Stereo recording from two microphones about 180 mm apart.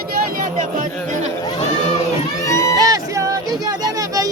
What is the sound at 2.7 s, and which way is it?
Music, 20° right (ahead or behind).